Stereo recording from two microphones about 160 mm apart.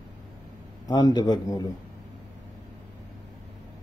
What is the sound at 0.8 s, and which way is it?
Speech, 25° left (ahead or behind).